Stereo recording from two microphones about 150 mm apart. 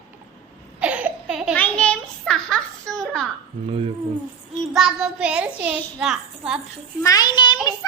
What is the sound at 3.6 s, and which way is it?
Speech, 40° right (ahead or behind).